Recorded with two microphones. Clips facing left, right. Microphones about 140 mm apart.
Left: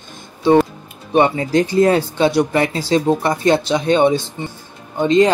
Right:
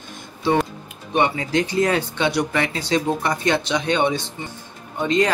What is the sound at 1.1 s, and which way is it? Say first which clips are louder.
Speech: left 6 dB; 35° left (ahead or behind).